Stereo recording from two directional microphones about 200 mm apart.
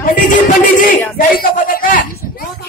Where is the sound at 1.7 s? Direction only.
45° left (ahead or behind).